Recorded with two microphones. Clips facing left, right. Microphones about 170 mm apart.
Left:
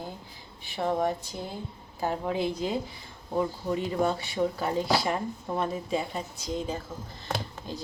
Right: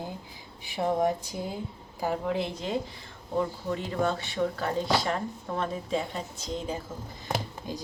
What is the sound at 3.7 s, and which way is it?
Speech, 10° left (ahead or behind).